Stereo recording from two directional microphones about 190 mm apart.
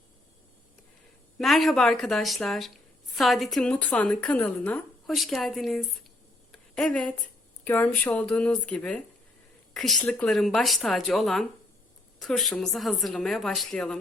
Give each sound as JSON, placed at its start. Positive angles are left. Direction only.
{"t": 1.4, "sound": "a woman's voice", "side_deg": 0}
{"t": 6.5, "sound": "a sound", "side_deg": 0}
{"t": 7.6, "sound": "a woman's voice", "side_deg": 10}